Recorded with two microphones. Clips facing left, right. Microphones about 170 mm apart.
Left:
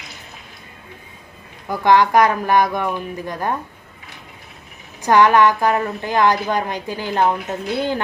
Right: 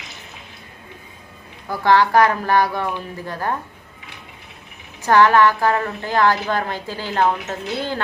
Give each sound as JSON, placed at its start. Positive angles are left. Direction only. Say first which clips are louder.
{"t": 1.7, "sound": "a woman's voice", "louder": "left 1 dB", "side_deg": 15}
{"t": 5.0, "sound": "a woman's voice", "louder": "left 1 dB", "side_deg": 15}